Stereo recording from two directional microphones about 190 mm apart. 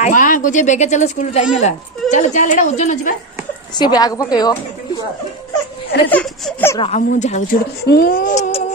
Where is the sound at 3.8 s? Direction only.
20° left (ahead or behind).